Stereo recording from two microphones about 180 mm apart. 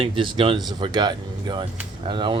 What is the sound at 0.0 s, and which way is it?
Speech, 30° right (ahead or behind).